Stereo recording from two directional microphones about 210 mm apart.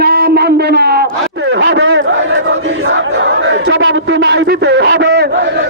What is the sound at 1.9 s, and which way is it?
Battle cry, 65° right (ahead or behind).